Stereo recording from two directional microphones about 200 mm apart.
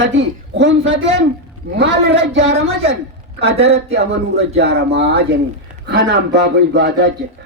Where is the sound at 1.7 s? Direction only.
60° right (ahead or behind).